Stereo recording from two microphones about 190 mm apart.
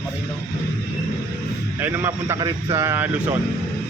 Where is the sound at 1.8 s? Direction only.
10° right (ahead or behind).